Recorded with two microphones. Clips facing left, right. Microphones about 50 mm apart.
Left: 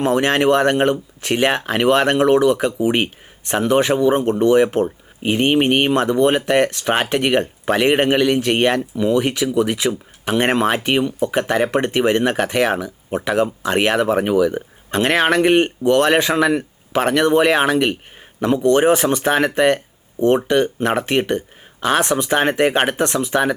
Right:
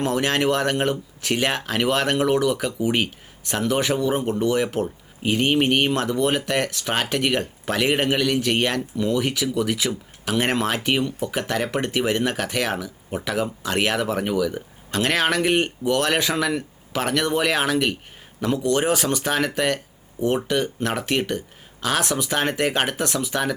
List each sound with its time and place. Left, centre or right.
0.0 s speech: left